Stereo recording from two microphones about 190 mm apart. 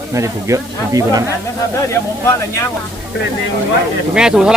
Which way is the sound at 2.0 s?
10° left (ahead or behind).